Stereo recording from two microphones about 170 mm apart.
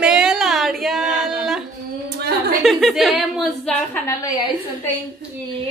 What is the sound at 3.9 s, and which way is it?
Speech, 15° left (ahead or behind).